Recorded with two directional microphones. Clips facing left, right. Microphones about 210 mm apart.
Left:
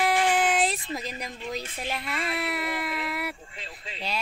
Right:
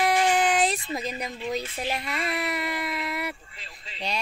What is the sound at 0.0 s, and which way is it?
Speech, 5° left (ahead or behind).